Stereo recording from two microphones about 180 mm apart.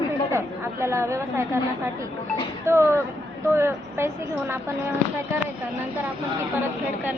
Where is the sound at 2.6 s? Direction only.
15° right (ahead or behind).